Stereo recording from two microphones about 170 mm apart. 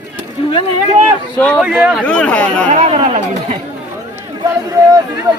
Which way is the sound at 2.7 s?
40° right (ahead or behind).